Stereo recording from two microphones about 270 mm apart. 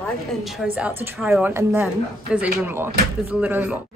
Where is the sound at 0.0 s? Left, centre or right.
Centre.